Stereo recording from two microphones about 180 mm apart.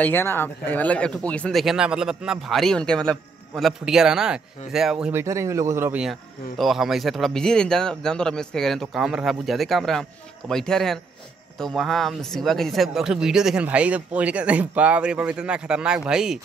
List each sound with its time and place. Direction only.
0.0 s speech: 10° left (ahead or behind); by 5.2 s 5° right (ahead or behind)
5.2 s speech: 15° right (ahead or behind)